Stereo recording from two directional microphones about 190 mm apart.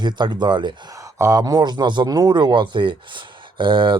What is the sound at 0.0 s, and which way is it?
Speech, 25° right (ahead or behind).